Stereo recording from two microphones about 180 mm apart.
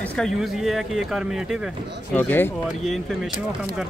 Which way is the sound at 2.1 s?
10° left (ahead or behind).